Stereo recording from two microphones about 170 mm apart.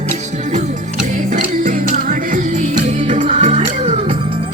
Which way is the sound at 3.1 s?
45° right (ahead or behind).